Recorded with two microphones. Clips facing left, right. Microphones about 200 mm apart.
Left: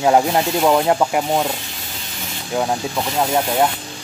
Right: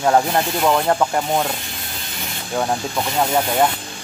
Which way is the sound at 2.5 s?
5° left (ahead or behind).